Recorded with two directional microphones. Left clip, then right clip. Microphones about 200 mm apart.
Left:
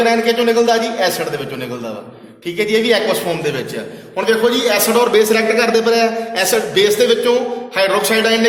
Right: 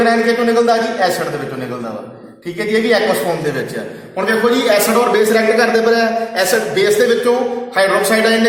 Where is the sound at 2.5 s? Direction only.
40° left (ahead or behind).